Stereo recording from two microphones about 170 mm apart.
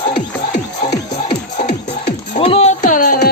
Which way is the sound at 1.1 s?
35° left (ahead or behind).